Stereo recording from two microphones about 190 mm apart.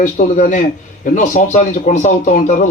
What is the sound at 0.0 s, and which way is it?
Speech, 40° left (ahead or behind).